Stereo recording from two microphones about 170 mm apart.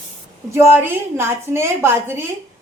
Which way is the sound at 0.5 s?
15° right (ahead or behind).